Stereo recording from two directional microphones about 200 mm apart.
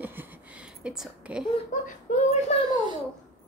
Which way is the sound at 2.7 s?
20° right (ahead or behind).